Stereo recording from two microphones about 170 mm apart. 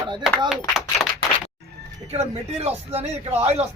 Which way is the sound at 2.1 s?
40° right (ahead or behind).